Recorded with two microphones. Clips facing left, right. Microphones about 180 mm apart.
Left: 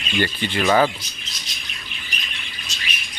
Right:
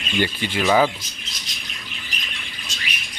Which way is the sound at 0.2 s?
10° right (ahead or behind).